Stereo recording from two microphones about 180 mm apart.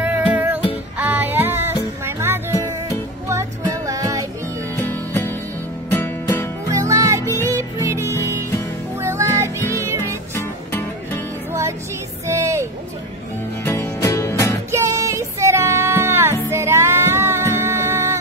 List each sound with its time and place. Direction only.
0.0 s music: 10° right (ahead or behind)
4.7 s music: 10° left (ahead or behind)
6.7 s music: 15° right (ahead or behind)
12.3 s music: 15° right (ahead or behind)
13.7 s music: 15° left (ahead or behind)
14.7 s music: 15° right (ahead or behind)